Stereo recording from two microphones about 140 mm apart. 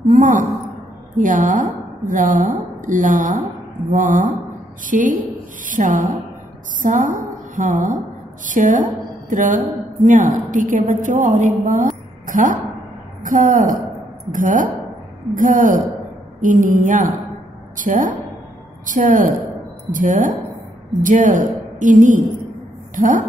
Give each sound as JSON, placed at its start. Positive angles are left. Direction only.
{"t": 0.1, "sound": "a woman's voice", "side_deg": -65}